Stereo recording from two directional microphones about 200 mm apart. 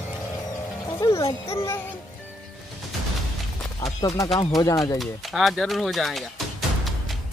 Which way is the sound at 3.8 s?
20° left (ahead or behind).